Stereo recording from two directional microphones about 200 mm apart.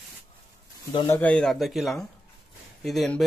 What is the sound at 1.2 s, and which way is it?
Speech, 5° left (ahead or behind).